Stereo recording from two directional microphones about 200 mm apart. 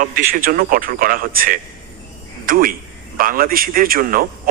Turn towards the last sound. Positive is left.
turn(degrees=-45)  # may be behind; listen again after turning